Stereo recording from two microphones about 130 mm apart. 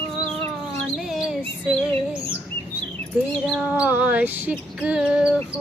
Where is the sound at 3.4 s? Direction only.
5° right (ahead or behind).